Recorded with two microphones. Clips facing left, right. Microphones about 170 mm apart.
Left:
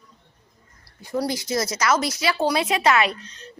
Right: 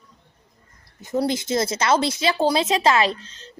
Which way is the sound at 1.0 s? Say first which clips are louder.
Right 3 dB; 20° right (ahead or behind).